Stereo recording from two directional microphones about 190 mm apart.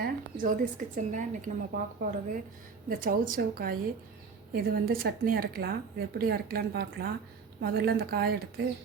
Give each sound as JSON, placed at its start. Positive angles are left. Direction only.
{"t": 0.0, "sound": "a woman's voice", "side_deg": -45}